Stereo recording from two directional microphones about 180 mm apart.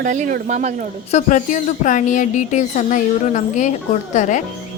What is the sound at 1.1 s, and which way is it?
Speech, 45° left (ahead or behind).